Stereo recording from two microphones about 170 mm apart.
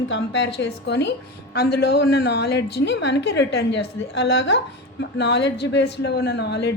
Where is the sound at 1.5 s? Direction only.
70° left (ahead or behind).